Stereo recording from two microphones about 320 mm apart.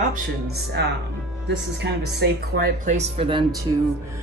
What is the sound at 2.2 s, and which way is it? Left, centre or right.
Speech, right.